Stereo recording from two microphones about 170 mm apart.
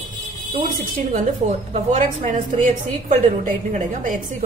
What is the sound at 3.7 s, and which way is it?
Speech, 50° right (ahead or behind).